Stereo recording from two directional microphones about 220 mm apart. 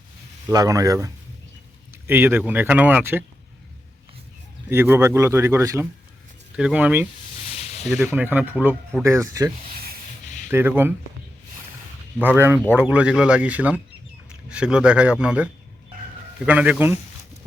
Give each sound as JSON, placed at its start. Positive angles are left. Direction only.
{"t": 0.4, "sound": "speech", "side_deg": -15}
{"t": 4.7, "sound": "speech", "side_deg": -10}
{"t": 7.4, "sound": "a sound", "side_deg": 30}
{"t": 7.9, "sound": "speech", "side_deg": -5}
{"t": 10.5, "sound": "speech", "side_deg": -10}
{"t": 12.2, "sound": "speech", "side_deg": -10}
{"t": 16.5, "sound": "speech", "side_deg": -5}